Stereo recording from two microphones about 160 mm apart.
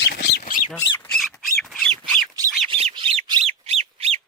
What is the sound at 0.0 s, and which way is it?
Bird, 90° left.